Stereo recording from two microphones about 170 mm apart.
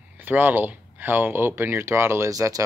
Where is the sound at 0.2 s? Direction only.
10° right (ahead or behind).